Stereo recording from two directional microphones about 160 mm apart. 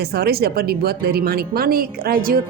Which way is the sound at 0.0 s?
80° right.